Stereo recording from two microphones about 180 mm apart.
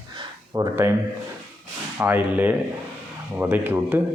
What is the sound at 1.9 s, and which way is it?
A man's voice, 10° right (ahead or behind).